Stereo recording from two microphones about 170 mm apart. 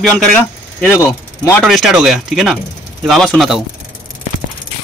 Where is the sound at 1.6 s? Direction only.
Centre (ahead or behind).